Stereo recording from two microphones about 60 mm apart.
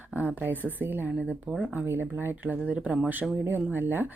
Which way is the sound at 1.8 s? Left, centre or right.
Right.